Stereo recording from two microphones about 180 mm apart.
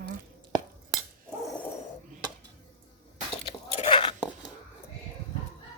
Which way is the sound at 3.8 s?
30° left (ahead or behind).